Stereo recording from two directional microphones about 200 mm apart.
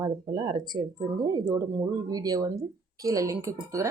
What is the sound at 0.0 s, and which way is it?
Speech, 20° right (ahead or behind).